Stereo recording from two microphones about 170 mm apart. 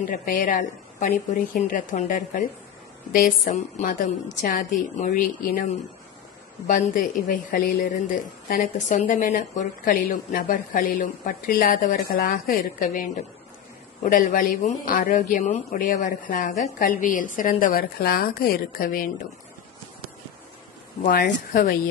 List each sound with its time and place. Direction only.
0.0 s a woman's voice: 50° left (ahead or behind)
6.7 s a woman's voice: 55° left (ahead or behind)
21.0 s a woman's voice: 60° left (ahead or behind)